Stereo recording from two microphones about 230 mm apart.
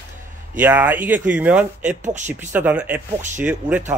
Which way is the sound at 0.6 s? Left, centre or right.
Centre.